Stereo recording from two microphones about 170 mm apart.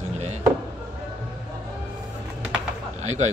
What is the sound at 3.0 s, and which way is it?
Speech, 40° right (ahead or behind).